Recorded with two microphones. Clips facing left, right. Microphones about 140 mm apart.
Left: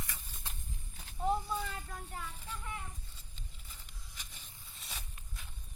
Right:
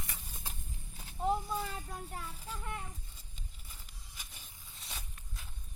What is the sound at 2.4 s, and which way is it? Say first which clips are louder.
Child singing: right 2 dB; 35° right (ahead or behind).